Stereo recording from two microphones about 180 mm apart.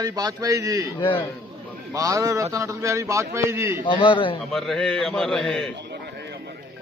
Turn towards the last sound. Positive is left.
turn(degrees=5)  # may be behind; listen again after turning